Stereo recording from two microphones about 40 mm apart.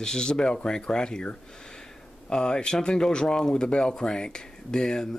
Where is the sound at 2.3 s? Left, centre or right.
Centre.